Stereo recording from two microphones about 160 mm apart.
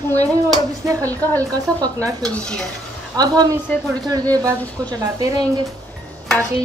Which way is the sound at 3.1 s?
25° right (ahead or behind).